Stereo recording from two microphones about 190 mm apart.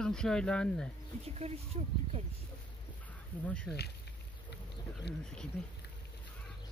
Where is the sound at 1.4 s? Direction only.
35° right (ahead or behind).